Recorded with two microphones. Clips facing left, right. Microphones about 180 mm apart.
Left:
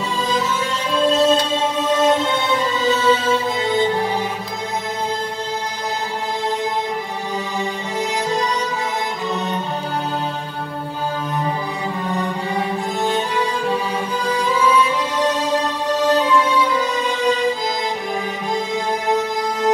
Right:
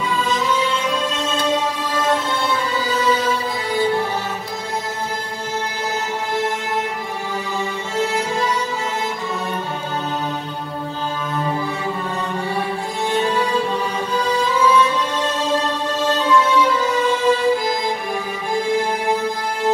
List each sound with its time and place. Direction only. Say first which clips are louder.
0.8 s music: left 7 dB; 35° left (ahead or behind)
2.0 s music: left 2 dB; 20° left (ahead or behind)
8.0 s music: right 1 dB; 15° left (ahead or behind)
13.1 s music: right 2 dB; 15° left (ahead or behind)